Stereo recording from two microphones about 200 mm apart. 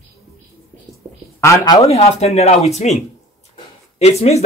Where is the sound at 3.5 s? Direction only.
30° left (ahead or behind).